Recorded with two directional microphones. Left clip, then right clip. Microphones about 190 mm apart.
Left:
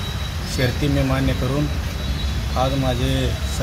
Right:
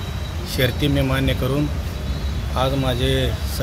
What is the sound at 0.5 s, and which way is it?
Speech, 10° right (ahead or behind).